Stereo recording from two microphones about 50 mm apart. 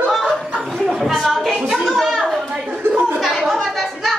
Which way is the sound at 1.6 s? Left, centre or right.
Centre.